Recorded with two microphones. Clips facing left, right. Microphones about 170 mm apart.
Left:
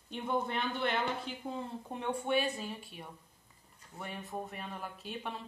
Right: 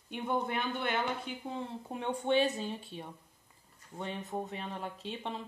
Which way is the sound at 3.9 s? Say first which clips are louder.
Right 4 dB; 25° right (ahead or behind).